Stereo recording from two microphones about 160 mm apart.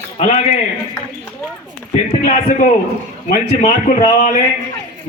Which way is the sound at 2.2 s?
50° left (ahead or behind).